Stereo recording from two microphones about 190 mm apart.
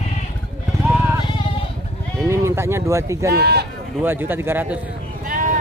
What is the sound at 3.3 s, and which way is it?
Speech, 60° right (ahead or behind).